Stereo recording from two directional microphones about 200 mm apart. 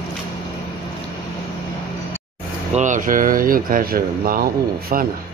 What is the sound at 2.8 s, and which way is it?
Speech, 40° right (ahead or behind).